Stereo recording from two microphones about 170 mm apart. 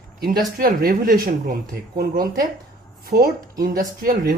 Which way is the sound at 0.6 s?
60° right (ahead or behind).